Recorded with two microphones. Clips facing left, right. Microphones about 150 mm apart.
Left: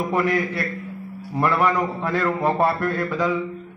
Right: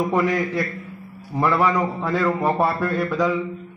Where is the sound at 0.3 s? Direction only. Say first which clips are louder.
Right 1 dB; 20° right (ahead or behind).